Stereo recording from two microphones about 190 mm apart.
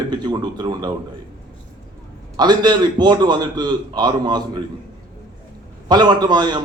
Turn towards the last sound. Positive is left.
turn(degrees=-20)  # may be behind; listen again after turning